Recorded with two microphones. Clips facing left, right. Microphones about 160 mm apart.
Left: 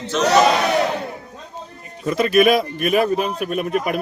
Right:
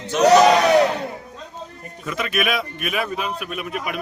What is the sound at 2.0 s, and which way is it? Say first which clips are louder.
Speech: left 9 dB; 35° left (ahead or behind).